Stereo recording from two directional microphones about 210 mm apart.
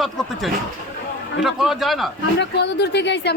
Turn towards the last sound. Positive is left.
turn(degrees=55)  # may be behind; listen again after turning